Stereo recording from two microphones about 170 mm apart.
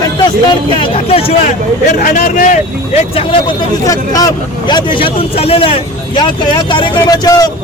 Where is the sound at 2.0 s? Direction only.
50° left (ahead or behind).